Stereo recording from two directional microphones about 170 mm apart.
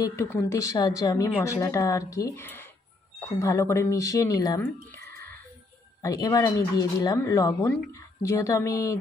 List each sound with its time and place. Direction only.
0.0 s speech: 15° left (ahead or behind)